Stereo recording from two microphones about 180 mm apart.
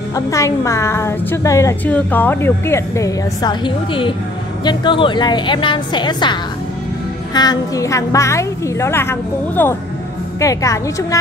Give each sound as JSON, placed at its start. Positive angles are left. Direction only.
{"t": 0.1, "sound": "a woman's voice", "side_deg": 15}
{"t": 7.3, "sound": "a woman's voice", "side_deg": 20}